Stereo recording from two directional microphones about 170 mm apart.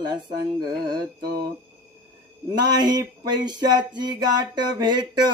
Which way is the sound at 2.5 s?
25° right (ahead or behind).